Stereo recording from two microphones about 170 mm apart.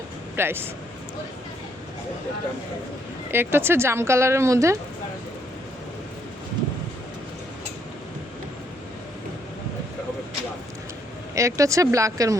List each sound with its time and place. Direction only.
0.3 s a woman's voice: 15° right (ahead or behind)
3.3 s a woman's voice: 15° right (ahead or behind)
11.3 s speech: 20° right (ahead or behind)